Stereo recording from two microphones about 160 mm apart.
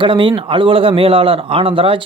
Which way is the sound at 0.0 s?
30° right (ahead or behind).